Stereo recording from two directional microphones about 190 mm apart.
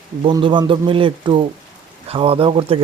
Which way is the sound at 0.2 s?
25° right (ahead or behind).